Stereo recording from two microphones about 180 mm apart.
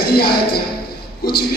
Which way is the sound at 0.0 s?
60° left (ahead or behind).